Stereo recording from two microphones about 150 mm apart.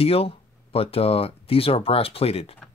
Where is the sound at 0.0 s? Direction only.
40° left (ahead or behind).